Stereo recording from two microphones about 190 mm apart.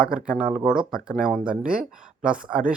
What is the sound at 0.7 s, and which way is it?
Speech, 5° right (ahead or behind).